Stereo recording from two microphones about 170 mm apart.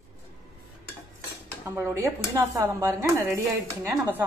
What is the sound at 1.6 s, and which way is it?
Speech, 15° right (ahead or behind).